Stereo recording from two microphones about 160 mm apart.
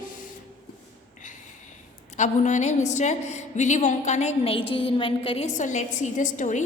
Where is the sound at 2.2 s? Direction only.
50° left (ahead or behind).